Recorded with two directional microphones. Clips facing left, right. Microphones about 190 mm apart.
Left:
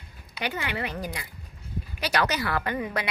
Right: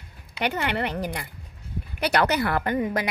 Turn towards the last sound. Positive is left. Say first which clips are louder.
# right 4 dB
turn(degrees=-40)  # may be behind; listen again after turning